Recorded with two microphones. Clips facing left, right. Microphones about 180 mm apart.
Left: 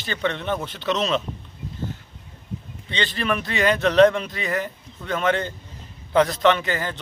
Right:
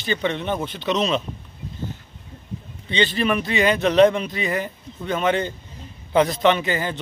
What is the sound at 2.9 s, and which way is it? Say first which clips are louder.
Speech: right 4 dB; 5° right (ahead or behind).